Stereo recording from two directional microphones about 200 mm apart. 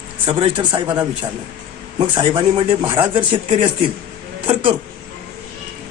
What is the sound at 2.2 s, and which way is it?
A man's voice, 25° right (ahead or behind).